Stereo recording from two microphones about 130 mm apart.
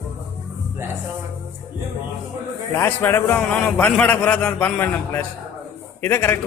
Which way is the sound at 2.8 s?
15° left (ahead or behind).